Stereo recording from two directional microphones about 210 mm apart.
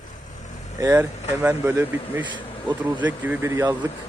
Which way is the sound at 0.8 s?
15° right (ahead or behind).